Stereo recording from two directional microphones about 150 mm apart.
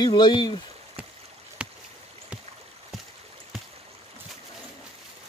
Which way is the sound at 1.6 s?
5° right (ahead or behind).